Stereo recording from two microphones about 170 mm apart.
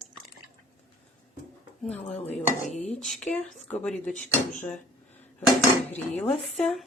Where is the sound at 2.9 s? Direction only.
5° left (ahead or behind).